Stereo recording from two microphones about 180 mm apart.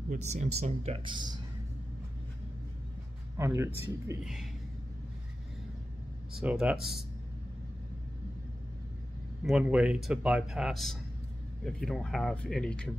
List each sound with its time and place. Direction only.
0.1 s speech: 40° right (ahead or behind)
3.3 s speech: 15° right (ahead or behind)
4.2 s speech: centre (ahead or behind)
6.3 s speech: 5° right (ahead or behind)
9.4 s speech: 5° right (ahead or behind)